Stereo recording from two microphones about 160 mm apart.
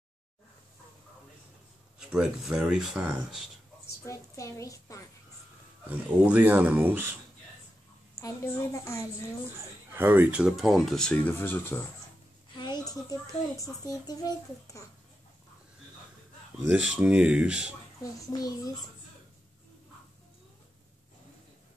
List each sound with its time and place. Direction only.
2.0 s speech: 5° right (ahead or behind)
4.0 s a woman's voice: 20° left (ahead or behind)
5.9 s speech: 10° right (ahead or behind)
8.2 s a woman's voice: 15° left (ahead or behind)
9.9 s speech: 15° right (ahead or behind); by 11.8 s 15° left (ahead or behind)
12.5 s a sound: 25° left (ahead or behind)
13.6 s speech: 20° left (ahead or behind)
16.6 s speech: 5° right (ahead or behind)
18.3 s speech: 25° left (ahead or behind)